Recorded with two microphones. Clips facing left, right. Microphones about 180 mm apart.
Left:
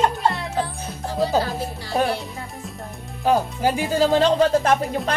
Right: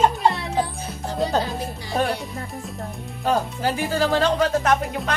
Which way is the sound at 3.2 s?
15° left (ahead or behind).